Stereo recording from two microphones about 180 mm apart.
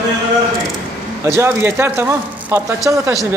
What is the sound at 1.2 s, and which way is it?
Speech, 15° right (ahead or behind).